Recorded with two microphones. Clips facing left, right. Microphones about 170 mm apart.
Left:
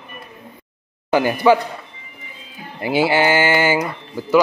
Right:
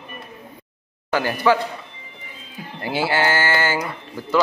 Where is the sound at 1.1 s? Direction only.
15° left (ahead or behind).